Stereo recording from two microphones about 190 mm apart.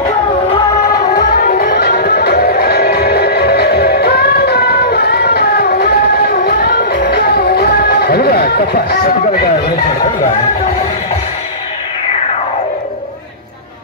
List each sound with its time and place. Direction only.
1.1 s music: 50° left (ahead or behind)